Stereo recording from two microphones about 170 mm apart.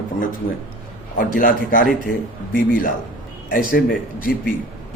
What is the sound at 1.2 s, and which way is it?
A man's voice, 55° left (ahead or behind).